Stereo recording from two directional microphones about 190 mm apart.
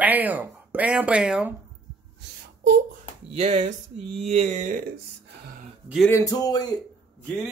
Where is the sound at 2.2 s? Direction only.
65° right (ahead or behind).